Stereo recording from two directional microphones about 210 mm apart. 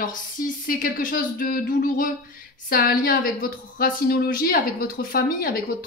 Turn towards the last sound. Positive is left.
turn(degrees=45)  # may be behind; listen again after turning